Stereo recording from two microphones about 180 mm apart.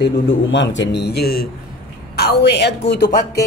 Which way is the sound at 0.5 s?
85° left.